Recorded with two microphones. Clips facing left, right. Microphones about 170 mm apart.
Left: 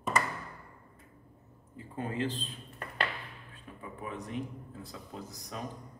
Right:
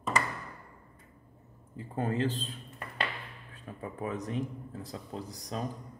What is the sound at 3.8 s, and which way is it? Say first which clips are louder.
Speech: right 5 dB; 40° right (ahead or behind).